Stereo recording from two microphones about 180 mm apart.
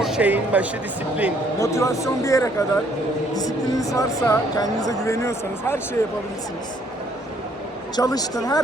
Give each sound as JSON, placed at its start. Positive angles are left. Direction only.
{"t": 0.0, "sound": "speech", "side_deg": -5}
{"t": 1.5, "sound": "speech", "side_deg": 15}
{"t": 7.9, "sound": "speech", "side_deg": 20}